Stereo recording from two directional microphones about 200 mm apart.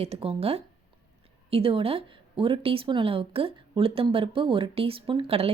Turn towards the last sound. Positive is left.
turn(degrees=-30)  # may be behind; listen again after turning